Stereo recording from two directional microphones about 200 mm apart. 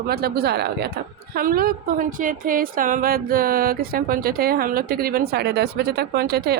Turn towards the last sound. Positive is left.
turn(degrees=-50)  # may be behind; listen again after turning